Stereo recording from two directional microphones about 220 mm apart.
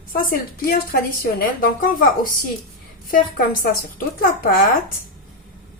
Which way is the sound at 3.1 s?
40° left (ahead or behind).